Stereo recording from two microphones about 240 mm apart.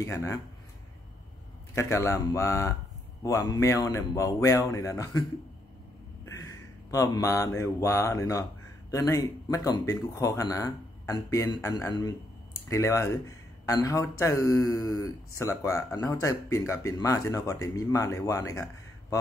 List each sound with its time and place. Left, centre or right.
0.0 s speech: centre
1.8 s speech: centre
6.9 s speech: centre